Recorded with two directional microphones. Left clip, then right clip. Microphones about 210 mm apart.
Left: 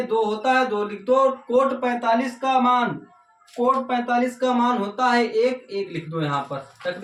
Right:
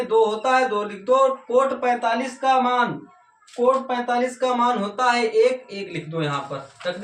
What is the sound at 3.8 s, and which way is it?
Speech, 15° left (ahead or behind).